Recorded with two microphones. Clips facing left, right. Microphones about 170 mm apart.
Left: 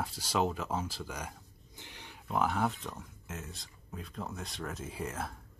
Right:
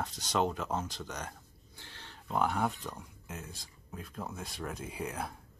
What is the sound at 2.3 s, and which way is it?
Speech, centre (ahead or behind).